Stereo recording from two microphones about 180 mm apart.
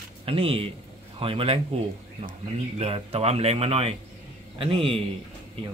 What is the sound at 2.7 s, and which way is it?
Speech, 35° right (ahead or behind).